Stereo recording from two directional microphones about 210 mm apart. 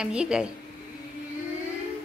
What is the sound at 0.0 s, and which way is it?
Speech, 5° right (ahead or behind).